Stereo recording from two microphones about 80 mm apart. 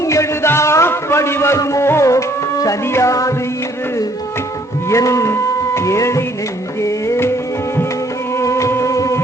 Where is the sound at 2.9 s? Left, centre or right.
Left.